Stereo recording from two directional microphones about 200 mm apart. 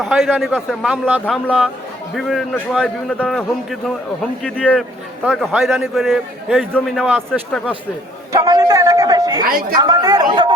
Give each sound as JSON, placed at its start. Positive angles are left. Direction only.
{"t": 0.0, "sound": "a man's voice", "side_deg": 0}
{"t": 8.3, "sound": "a sound", "side_deg": -20}
{"t": 9.5, "sound": "a woman's voice", "side_deg": -45}
{"t": 9.7, "sound": "speech", "side_deg": -20}